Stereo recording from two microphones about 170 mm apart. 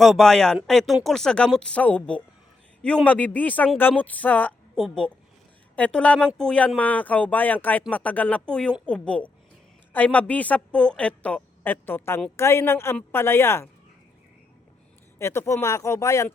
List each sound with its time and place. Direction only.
0.0 s speech: centre (ahead or behind)
15.2 s speech: 15° left (ahead or behind)